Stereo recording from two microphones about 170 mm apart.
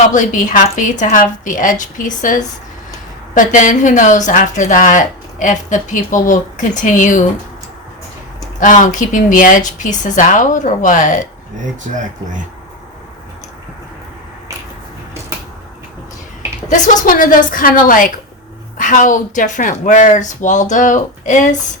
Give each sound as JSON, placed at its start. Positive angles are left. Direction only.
{"t": 0.1, "sound": "speech", "side_deg": 45}
{"t": 8.5, "sound": "speech", "side_deg": 50}
{"t": 16.6, "sound": "speech", "side_deg": 45}